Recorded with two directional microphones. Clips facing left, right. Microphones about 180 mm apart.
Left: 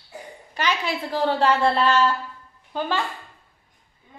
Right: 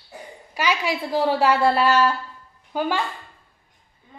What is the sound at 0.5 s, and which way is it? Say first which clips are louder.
A woman's voice: right 2 dB; 10° right (ahead or behind).